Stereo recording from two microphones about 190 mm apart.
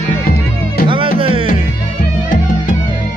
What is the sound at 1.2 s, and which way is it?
Music, 30° right (ahead or behind).